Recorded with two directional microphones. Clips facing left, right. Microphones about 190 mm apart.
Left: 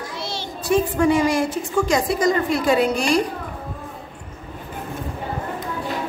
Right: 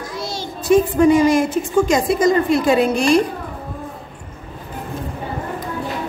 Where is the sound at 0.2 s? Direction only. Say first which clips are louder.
Right 4 dB; 45° right (ahead or behind).